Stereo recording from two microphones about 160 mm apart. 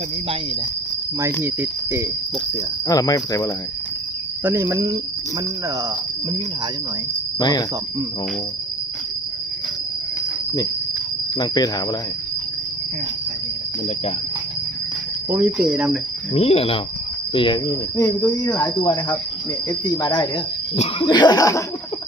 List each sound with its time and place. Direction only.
1.2 s cricket: 15° right (ahead or behind)
2.8 s speech: 20° left (ahead or behind)
4.4 s cricket: 15° right (ahead or behind)
7.3 s speech: 25° left (ahead or behind)
11.3 s speech: 25° left (ahead or behind)
15.3 s cricket: 10° right (ahead or behind)
16.3 s speech: 35° left (ahead or behind); by 21.6 s 20° left (ahead or behind)